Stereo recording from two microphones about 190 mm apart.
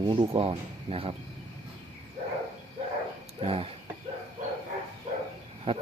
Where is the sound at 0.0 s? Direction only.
25° right (ahead or behind).